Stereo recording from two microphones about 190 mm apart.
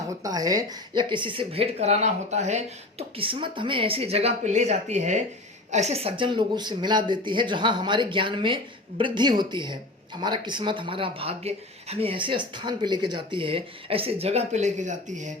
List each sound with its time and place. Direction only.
0.2 s speech: 20° right (ahead or behind); by 15.3 s 40° right (ahead or behind)